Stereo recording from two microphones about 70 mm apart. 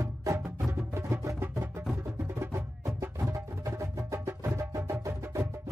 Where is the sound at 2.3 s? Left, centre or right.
Right.